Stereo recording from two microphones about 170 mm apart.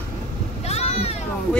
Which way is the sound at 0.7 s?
40° left (ahead or behind).